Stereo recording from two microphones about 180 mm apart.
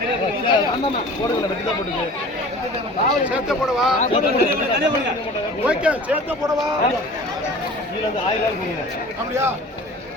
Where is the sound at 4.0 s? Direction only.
40° left (ahead or behind).